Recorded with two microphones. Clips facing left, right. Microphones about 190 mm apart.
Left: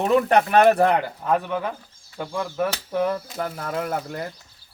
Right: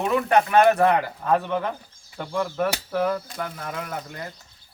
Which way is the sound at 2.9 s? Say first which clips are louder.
Left 1 dB; 25° left (ahead or behind).